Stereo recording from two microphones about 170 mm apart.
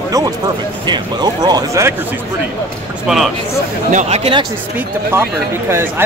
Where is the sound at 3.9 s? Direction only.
45° right (ahead or behind).